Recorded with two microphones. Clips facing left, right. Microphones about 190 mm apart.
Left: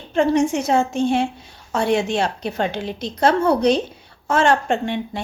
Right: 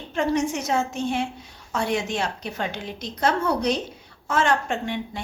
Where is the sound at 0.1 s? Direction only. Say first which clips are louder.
Left 6 dB; 30° left (ahead or behind).